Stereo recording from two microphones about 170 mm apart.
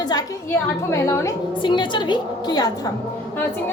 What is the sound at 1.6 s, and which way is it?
A woman's voice, 30° left (ahead or behind).